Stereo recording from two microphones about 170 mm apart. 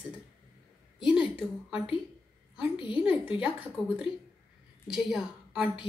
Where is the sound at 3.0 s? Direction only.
5° right (ahead or behind).